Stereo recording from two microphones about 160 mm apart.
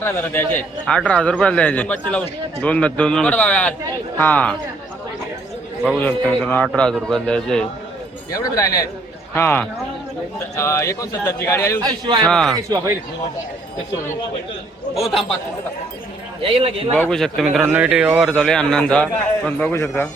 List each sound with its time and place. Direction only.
0.0 s a man's voice: 10° left (ahead or behind)
6.0 s a man's voice: 10° left (ahead or behind)
8.3 s a man's voice: 20° left (ahead or behind)
11.8 s a man's voice: 30° right (ahead or behind)
12.2 s speech: 5° left (ahead or behind)
12.5 s a man's voice: 25° right (ahead or behind)
14.9 s speech: centre (ahead or behind)
16.4 s speech: 35° right (ahead or behind)
17.0 s speech: 5° left (ahead or behind)
18.3 s a man's voice: 5° left (ahead or behind)